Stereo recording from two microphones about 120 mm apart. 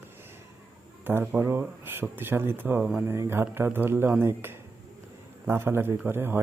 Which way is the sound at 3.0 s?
20° right (ahead or behind).